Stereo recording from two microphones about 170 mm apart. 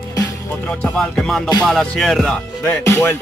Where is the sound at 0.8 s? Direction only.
5° left (ahead or behind).